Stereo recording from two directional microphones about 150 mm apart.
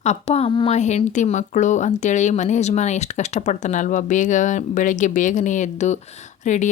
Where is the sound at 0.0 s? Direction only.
45° left (ahead or behind).